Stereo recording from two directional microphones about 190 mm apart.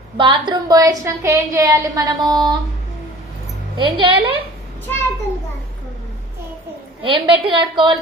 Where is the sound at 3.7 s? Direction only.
25° right (ahead or behind).